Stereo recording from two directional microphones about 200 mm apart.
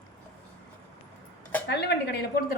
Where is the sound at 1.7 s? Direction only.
60° left (ahead or behind).